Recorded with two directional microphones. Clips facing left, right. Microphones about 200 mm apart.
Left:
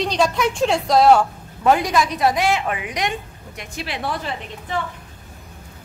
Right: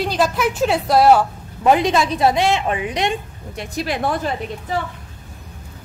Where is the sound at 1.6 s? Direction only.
20° right (ahead or behind).